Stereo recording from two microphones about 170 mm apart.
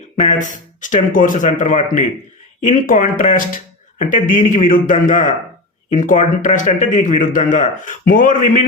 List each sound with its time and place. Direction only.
0.2 s speech: 45° left (ahead or behind)